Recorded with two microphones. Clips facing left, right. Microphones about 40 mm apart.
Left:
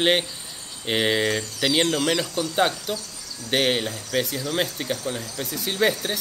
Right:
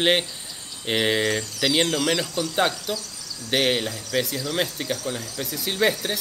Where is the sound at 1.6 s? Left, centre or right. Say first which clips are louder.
Even; centre.